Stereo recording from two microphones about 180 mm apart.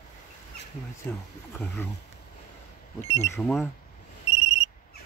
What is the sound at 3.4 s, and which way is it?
Speech, centre (ahead or behind).